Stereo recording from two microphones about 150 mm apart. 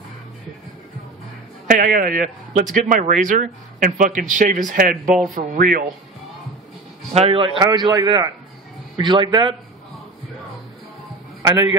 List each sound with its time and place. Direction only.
1.7 s a man's voice: 70° right (ahead or behind)
7.2 s a man's voice: 40° right (ahead or behind)